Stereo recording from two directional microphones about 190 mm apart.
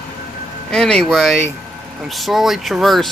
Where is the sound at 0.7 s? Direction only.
5° left (ahead or behind).